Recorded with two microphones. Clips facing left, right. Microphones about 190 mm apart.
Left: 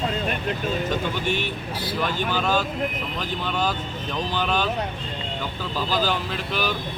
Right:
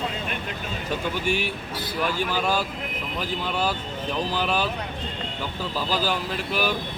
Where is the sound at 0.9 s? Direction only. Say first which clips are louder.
Left 1 dB; 10° right (ahead or behind).